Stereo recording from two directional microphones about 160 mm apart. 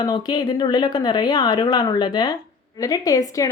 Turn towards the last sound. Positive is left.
turn(degrees=20)  # may be behind; listen again after turning